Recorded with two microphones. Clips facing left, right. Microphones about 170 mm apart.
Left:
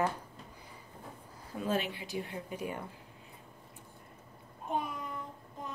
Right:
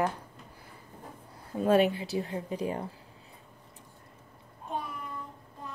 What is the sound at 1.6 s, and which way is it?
Speech, 60° right (ahead or behind).